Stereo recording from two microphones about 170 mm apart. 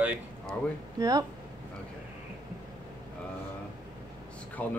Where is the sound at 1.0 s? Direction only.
20° right (ahead or behind).